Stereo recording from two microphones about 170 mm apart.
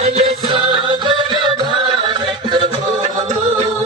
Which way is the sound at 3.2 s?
45° right (ahead or behind).